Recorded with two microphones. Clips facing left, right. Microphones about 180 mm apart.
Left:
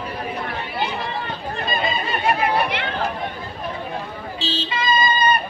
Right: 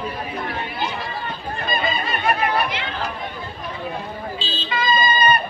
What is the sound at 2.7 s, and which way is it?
Chatter, 65° left (ahead or behind).